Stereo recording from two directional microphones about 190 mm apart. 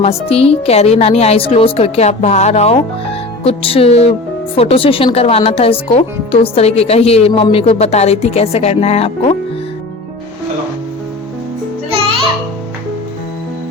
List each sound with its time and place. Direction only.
0.0 s speech: 30° left (ahead or behind)